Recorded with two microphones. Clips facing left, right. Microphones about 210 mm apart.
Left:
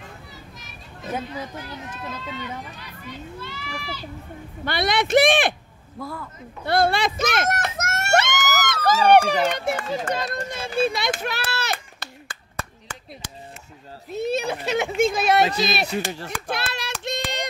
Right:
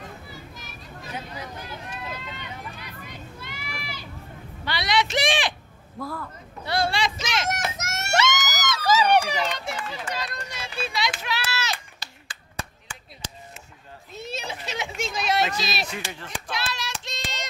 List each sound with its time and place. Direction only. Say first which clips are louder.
0.3 s children playing: right 2 dB; centre (ahead or behind)
3.3 s children playing: left 4 dB; 10° right (ahead or behind)
4.6 s speech: left 3 dB; 55° left (ahead or behind)
5.9 s a man's voice: even; centre (ahead or behind)
6.6 s speech: left 5 dB; 55° left (ahead or behind)
7.7 s a sound: left 5 dB; 55° left (ahead or behind)
14.2 s a child's voice: left 10 dB; 55° left (ahead or behind)
16.3 s hands: left 3 dB; 60° left (ahead or behind)